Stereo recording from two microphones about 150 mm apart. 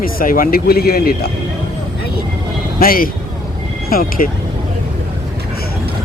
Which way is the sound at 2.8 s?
75° left (ahead or behind).